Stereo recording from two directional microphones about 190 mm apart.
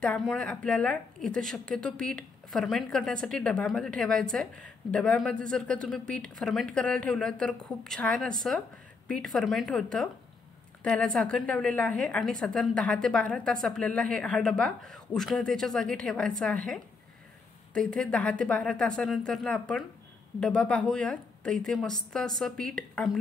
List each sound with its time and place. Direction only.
0.0 s speech: 5° left (ahead or behind)